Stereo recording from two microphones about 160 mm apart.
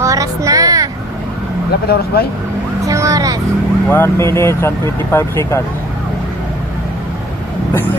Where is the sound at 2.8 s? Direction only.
20° right (ahead or behind).